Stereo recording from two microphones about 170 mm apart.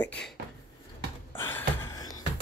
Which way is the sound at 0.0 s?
10° left (ahead or behind).